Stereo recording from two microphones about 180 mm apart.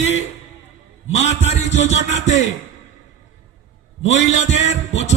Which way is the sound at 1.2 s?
40° left (ahead or behind).